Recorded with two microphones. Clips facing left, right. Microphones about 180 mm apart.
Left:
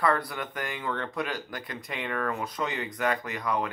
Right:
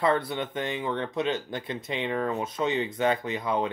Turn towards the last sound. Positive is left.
turn(degrees=-25)  # may be behind; listen again after turning